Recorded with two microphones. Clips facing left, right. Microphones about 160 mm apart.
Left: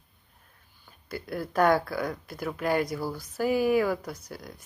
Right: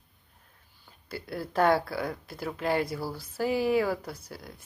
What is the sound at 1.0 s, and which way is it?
Speech, 30° right (ahead or behind).